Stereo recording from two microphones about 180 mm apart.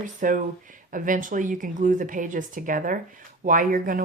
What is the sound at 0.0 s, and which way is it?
A woman's voice, 45° right (ahead or behind).